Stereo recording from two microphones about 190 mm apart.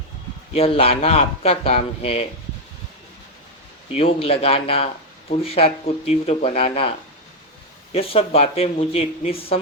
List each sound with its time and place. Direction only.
0.5 s speech: 30° left (ahead or behind)
3.9 s speech: 30° left (ahead or behind)
7.9 s speech: 30° left (ahead or behind)